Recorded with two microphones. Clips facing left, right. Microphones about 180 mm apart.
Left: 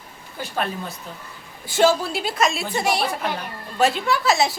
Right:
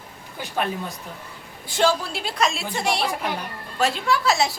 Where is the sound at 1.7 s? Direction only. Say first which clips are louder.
Left 3 dB; 5° left (ahead or behind).